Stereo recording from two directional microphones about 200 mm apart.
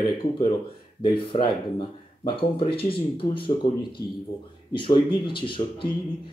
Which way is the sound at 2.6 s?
30° left (ahead or behind).